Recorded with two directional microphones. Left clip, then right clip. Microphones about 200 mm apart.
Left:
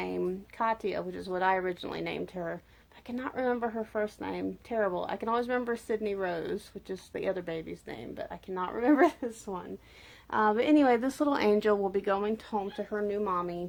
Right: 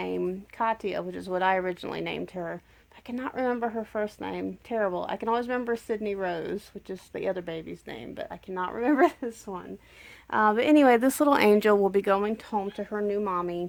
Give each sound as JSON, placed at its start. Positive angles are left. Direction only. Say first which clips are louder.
{"t": 0.0, "sound": "speech", "louder": "right 3 dB", "side_deg": -40}
{"t": 10.2, "sound": "speech", "louder": "right 4 dB", "side_deg": -50}